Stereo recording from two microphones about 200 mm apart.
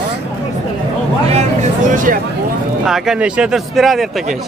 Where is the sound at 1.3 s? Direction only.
35° right (ahead or behind).